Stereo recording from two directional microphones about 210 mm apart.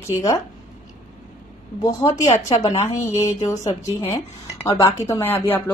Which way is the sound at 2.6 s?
15° left (ahead or behind).